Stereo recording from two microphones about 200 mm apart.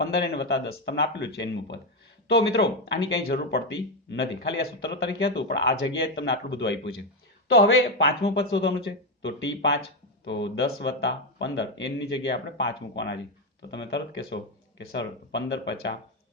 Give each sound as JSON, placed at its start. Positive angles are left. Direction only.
{"t": 0.0, "sound": "speech", "side_deg": 55}